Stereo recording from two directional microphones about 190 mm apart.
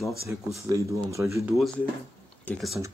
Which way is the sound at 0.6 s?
15° right (ahead or behind).